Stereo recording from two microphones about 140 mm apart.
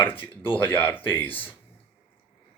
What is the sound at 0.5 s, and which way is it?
Speech, 15° left (ahead or behind).